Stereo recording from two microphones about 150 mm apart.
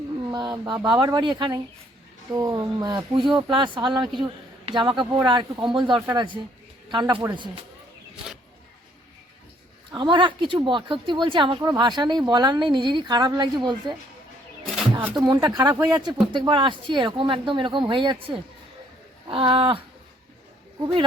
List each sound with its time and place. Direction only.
0.3 s a sound: 25° right (ahead or behind)
0.9 s a woman's voice: 30° right (ahead or behind)
9.9 s a woman's voice: 30° right (ahead or behind)
15.1 s a woman's voice: 30° right (ahead or behind)